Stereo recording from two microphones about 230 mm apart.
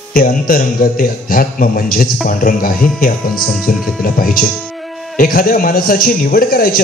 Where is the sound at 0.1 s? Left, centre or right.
Left.